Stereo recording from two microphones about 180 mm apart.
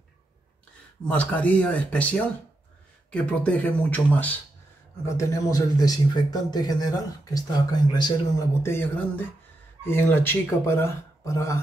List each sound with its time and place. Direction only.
1.0 s a man's voice: 10° left (ahead or behind)